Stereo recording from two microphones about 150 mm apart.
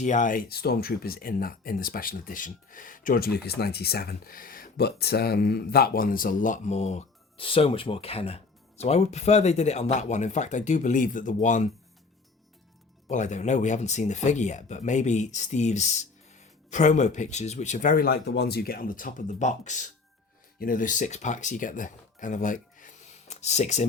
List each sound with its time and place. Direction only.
0.0 s speech: 55° left (ahead or behind)
7.4 s speech: 35° left (ahead or behind); by 11.7 s 55° left (ahead or behind)
13.1 s speech: 55° left (ahead or behind)
20.6 s speech: 65° left (ahead or behind); by 23.8 s 50° left (ahead or behind)